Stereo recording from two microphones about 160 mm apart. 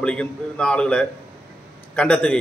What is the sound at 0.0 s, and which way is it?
A man's voice, 5° left (ahead or behind).